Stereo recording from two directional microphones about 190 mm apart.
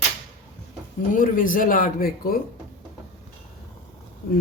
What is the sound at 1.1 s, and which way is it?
Speech, 45° left (ahead or behind).